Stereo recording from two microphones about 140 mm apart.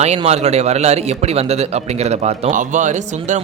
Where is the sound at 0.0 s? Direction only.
50° right (ahead or behind).